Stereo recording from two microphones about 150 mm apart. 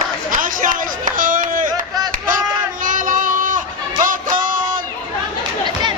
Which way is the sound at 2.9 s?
60° right (ahead or behind).